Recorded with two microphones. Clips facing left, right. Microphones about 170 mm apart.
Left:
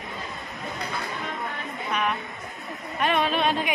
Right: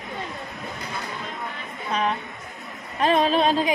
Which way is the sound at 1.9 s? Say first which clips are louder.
Right 3 dB; 30° right (ahead or behind).